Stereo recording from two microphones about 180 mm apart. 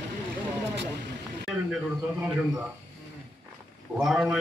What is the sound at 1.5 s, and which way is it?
A man's voice, centre (ahead or behind).